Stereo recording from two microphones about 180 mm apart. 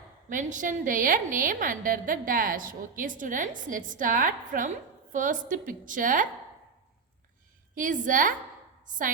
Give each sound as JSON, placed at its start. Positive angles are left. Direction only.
{"t": 0.3, "sound": "a woman's voice", "side_deg": -45}
{"t": 8.0, "sound": "a woman's voice", "side_deg": -45}